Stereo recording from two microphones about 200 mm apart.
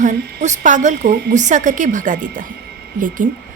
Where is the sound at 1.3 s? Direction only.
40° right (ahead or behind).